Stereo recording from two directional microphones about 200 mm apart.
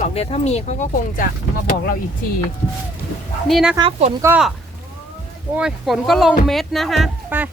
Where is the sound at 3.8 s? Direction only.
30° right (ahead or behind).